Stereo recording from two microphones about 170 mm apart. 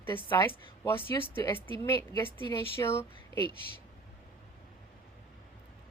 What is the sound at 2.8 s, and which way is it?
Speech, 15° left (ahead or behind).